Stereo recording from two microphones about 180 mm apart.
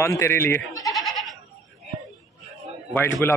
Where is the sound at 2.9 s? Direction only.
10° left (ahead or behind).